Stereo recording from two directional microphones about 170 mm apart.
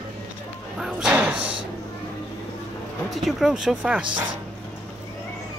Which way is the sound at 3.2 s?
Centre (ahead or behind).